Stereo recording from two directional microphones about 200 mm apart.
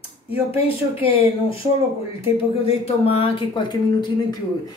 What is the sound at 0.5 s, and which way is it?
Speech, 30° left (ahead or behind).